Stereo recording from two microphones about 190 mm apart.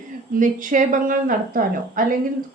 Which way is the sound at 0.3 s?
45° right (ahead or behind).